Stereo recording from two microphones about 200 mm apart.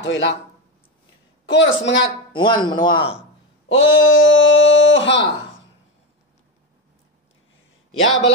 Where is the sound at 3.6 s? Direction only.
75° left (ahead or behind).